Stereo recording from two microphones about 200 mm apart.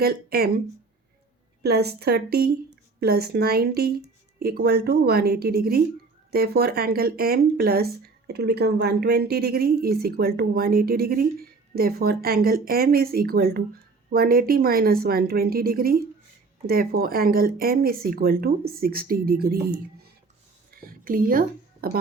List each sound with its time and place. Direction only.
0.0 s speech: 50° right (ahead or behind)
1.6 s speech: 55° right (ahead or behind)
20.8 s a sound: 45° right (ahead or behind)